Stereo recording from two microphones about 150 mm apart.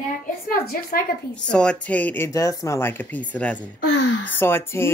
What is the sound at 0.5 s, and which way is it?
Speech, 80° left.